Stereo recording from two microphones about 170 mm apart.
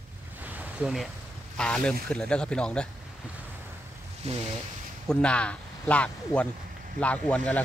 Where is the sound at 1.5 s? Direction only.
5° left (ahead or behind).